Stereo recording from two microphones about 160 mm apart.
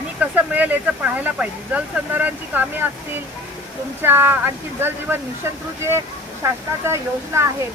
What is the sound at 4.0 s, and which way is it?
Speech, 15° right (ahead or behind).